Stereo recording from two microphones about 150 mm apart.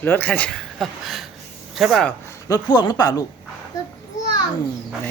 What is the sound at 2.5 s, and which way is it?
Speech, 30° left (ahead or behind).